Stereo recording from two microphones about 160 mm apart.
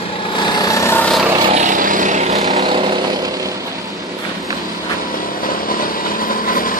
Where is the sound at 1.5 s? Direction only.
55° right (ahead or behind).